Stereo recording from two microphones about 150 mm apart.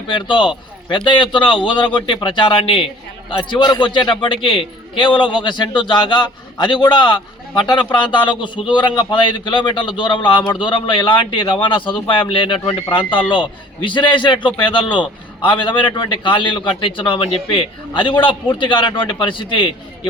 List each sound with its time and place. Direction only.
0.1 s a man's voice: 35° left (ahead or behind)